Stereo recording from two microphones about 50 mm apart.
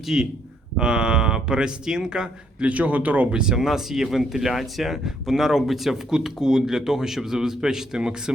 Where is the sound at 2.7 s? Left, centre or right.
Right.